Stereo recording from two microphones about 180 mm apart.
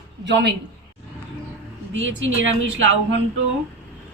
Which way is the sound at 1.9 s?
90° right.